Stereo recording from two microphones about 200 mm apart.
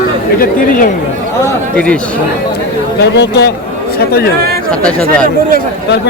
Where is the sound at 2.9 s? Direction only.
60° left (ahead or behind).